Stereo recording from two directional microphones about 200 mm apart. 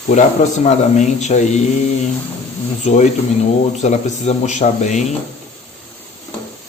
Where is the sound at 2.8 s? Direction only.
35° left (ahead or behind).